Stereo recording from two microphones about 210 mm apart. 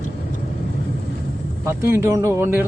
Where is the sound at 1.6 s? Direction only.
15° right (ahead or behind).